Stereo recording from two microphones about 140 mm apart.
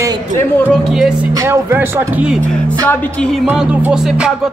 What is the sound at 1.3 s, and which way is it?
Speech, 20° right (ahead or behind).